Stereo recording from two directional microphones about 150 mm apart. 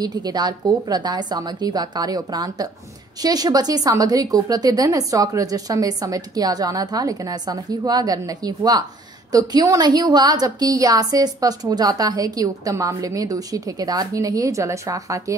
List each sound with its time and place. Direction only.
0.0 s a woman's voice: 25° right (ahead or behind)